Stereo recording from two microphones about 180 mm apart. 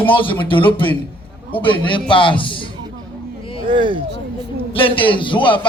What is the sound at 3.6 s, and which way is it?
Speech, 25° right (ahead or behind).